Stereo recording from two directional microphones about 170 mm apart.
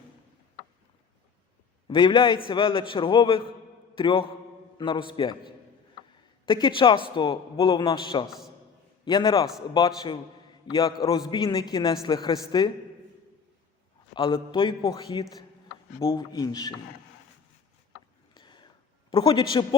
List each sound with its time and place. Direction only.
1.9 s a man's voice: 30° left (ahead or behind)
10.7 s a man's voice: 25° left (ahead or behind)
14.2 s a man's voice: 30° left (ahead or behind)
18.3 s a sound: 25° left (ahead or behind)
19.1 s a man's voice: 25° left (ahead or behind)